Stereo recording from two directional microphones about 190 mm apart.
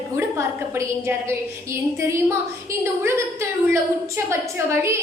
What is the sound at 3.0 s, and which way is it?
A woman's voice, 15° right (ahead or behind).